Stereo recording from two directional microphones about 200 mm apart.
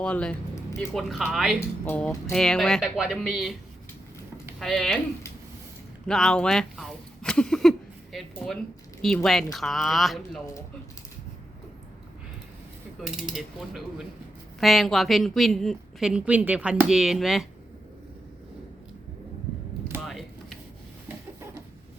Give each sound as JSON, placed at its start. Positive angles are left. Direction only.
{"t": 0.0, "sound": "a woman's voice", "side_deg": 5}
{"t": 0.5, "sound": "music", "side_deg": 15}
{"t": 0.9, "sound": "a woman's voice", "side_deg": 0}
{"t": 4.6, "sound": "a woman's voice", "side_deg": 0}
{"t": 6.1, "sound": "a woman's voice", "side_deg": 5}
{"t": 13.0, "sound": "a woman's voice", "side_deg": 0}
{"t": 20.0, "sound": "a sound", "side_deg": 0}